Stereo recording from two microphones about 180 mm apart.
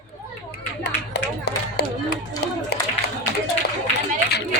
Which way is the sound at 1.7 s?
65° left (ahead or behind).